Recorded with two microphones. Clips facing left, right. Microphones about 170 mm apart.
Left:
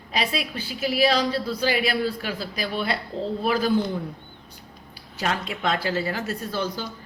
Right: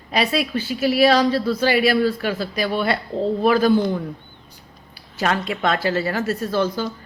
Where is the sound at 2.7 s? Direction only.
60° right (ahead or behind).